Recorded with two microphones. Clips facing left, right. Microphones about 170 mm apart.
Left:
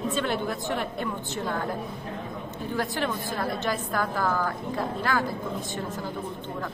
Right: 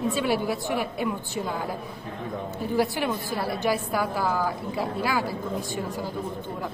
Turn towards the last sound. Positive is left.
turn(degrees=-10)  # may be behind; listen again after turning